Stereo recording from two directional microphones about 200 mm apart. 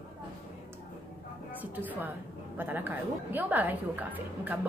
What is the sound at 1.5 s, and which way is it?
A woman's voice, 10° right (ahead or behind).